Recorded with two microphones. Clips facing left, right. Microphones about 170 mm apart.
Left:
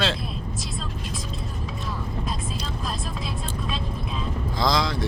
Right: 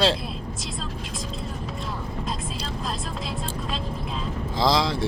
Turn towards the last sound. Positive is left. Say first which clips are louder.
# right 2 dB
turn(degrees=-30)  # may be behind; listen again after turning